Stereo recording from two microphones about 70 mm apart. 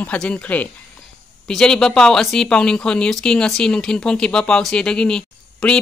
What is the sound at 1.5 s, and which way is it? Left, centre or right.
Speech, centre.